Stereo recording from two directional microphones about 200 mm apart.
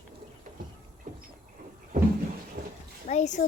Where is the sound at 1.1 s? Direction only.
40° right (ahead or behind).